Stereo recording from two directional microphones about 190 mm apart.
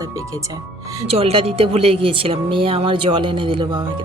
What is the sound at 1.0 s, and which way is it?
Speech, 30° right (ahead or behind).